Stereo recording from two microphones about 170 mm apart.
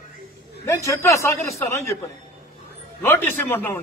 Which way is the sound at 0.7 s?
15° left (ahead or behind).